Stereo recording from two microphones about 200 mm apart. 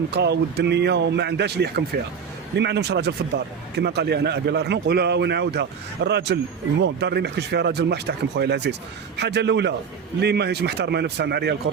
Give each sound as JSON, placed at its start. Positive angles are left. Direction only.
{"t": 0.1, "sound": "a man's voice", "side_deg": -55}